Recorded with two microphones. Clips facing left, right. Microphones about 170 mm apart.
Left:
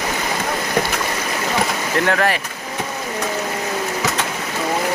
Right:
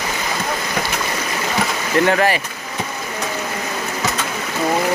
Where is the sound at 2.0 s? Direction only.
Centre (ahead or behind).